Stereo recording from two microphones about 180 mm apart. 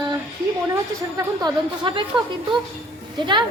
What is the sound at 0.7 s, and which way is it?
A woman's voice, 20° right (ahead or behind).